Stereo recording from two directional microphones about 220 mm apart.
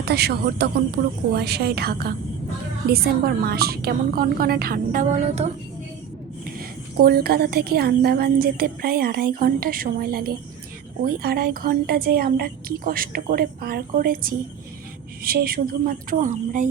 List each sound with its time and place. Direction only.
0.0 s a woman's voice: 45° right (ahead or behind); by 5.5 s 30° right (ahead or behind)
6.4 s a woman's voice: 45° right (ahead or behind)